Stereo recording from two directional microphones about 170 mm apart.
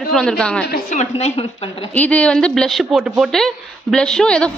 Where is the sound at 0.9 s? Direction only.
40° left (ahead or behind).